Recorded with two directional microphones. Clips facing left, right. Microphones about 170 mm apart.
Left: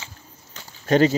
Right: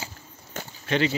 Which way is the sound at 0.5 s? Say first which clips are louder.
Right 8 dB; 50° right (ahead or behind).